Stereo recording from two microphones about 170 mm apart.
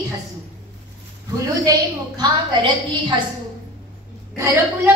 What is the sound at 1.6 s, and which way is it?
A woman's voice, 20° right (ahead or behind).